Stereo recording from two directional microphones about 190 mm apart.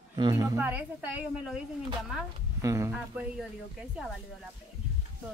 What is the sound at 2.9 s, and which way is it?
Speech, 5° right (ahead or behind).